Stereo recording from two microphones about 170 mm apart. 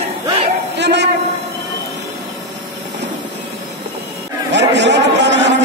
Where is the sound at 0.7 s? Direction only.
90° right.